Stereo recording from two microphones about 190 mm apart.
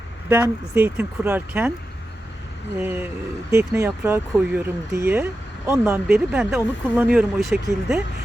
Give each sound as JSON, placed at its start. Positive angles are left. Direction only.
{"t": 0.3, "sound": "speech", "side_deg": -15}
{"t": 2.8, "sound": "speech", "side_deg": -10}